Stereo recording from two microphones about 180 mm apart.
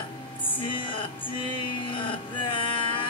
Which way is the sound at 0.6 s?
25° left (ahead or behind).